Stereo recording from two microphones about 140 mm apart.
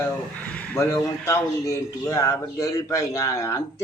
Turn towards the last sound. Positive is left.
turn(degrees=20)  # may be behind; listen again after turning